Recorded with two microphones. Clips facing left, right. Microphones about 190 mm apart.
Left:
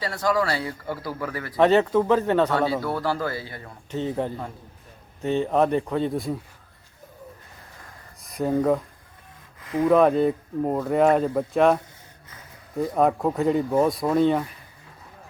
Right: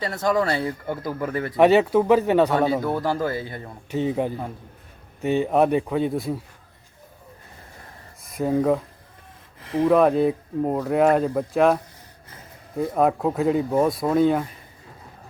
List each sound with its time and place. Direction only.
0.0 s speech: 20° right (ahead or behind)
1.5 s speech: 10° right (ahead or behind)
8.2 s speech: 5° right (ahead or behind)
9.8 s speech: centre (ahead or behind)